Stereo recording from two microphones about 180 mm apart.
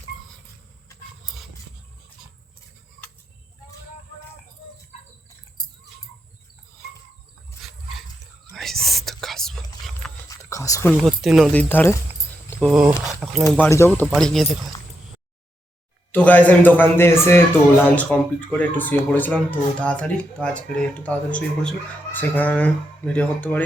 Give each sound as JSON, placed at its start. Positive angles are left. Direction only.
{"t": 8.5, "sound": "whispering", "side_deg": 0}
{"t": 10.2, "sound": "a sound", "side_deg": 15}
{"t": 10.9, "sound": "speech", "side_deg": 0}
{"t": 11.5, "sound": "a man's voice", "side_deg": 10}
{"t": 12.5, "sound": "speech", "side_deg": 0}
{"t": 13.5, "sound": "a man's voice", "side_deg": 10}
{"t": 16.1, "sound": "a man's voice", "side_deg": 10}